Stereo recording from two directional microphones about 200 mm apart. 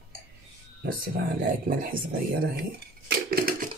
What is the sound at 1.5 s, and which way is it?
Speech, 45° right (ahead or behind).